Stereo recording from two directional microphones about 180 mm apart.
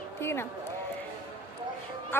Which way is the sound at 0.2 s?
15° left (ahead or behind).